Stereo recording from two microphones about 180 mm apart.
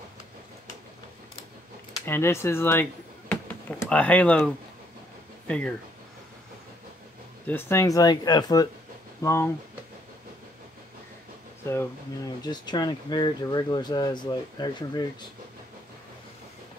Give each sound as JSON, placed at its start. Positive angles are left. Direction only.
{"t": 2.0, "sound": "speech", "side_deg": 15}
{"t": 7.4, "sound": "speech", "side_deg": 10}
{"t": 11.6, "sound": "speech", "side_deg": 15}